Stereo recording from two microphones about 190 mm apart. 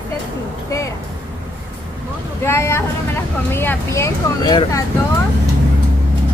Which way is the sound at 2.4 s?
15° left (ahead or behind).